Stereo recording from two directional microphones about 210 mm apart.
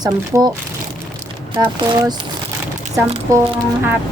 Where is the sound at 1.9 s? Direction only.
20° right (ahead or behind).